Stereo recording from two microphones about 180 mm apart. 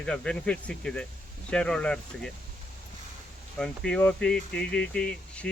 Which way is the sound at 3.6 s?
5° left (ahead or behind).